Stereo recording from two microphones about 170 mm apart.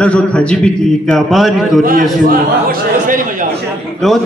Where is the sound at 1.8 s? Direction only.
55° right (ahead or behind).